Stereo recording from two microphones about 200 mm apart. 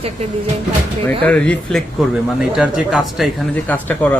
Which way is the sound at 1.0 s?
5° left (ahead or behind).